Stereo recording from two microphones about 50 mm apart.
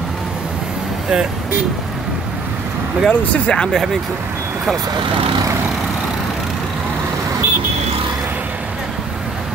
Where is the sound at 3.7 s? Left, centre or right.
Centre.